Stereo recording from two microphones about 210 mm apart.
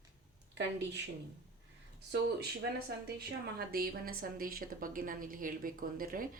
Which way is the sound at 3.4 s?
45° right (ahead or behind).